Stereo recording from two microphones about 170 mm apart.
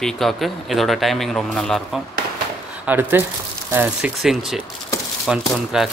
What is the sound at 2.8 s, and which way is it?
Speech, 10° right (ahead or behind).